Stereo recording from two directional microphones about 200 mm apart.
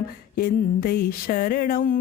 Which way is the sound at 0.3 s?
50° left (ahead or behind).